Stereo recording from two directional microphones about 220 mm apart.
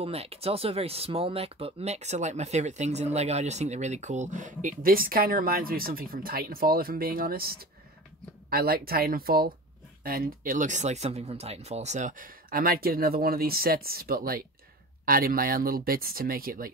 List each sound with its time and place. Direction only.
0.0 s speech: 25° right (ahead or behind)